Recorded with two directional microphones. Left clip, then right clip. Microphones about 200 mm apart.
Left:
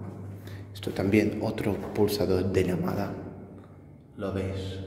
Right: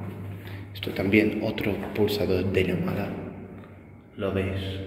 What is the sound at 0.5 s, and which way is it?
Speech, 20° left (ahead or behind).